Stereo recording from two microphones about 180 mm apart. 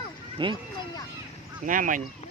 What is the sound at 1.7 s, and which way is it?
Speech, 45° right (ahead or behind).